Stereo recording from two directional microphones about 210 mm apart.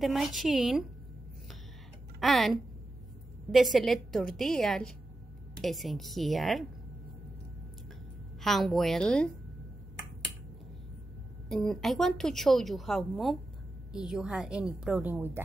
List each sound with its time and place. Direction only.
0.0 s a woman's voice: centre (ahead or behind)
2.1 s a woman's voice: centre (ahead or behind)
8.4 s a woman's voice: centre (ahead or behind)
11.4 s a woman's voice: centre (ahead or behind)